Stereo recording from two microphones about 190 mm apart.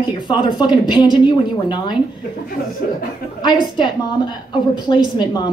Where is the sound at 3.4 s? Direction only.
25° left (ahead or behind).